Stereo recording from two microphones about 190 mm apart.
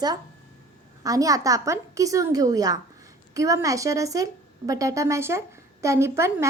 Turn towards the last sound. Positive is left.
turn(degrees=-15)  # may be behind; listen again after turning